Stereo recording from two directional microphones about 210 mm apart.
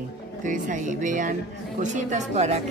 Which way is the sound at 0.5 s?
40° right (ahead or behind).